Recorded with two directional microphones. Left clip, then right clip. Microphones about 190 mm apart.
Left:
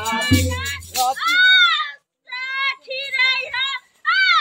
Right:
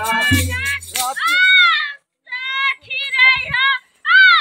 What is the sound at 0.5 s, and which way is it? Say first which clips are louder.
Music: right 5 dB; 10° right (ahead or behind).